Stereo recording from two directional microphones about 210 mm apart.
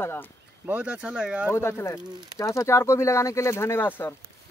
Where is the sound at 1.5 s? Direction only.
10° left (ahead or behind).